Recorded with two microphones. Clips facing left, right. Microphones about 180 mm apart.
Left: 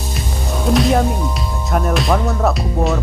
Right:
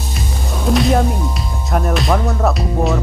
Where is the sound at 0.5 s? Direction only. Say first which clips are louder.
Even; centre (ahead or behind).